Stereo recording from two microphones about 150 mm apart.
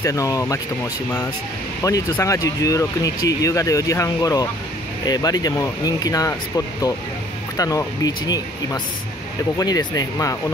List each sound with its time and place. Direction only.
0.0 s speech: 20° left (ahead or behind)
1.8 s speech: 20° left (ahead or behind)
7.5 s speech: 25° left (ahead or behind)